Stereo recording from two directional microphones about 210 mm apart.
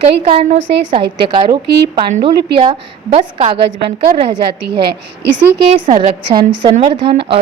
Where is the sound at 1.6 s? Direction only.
50° right (ahead or behind).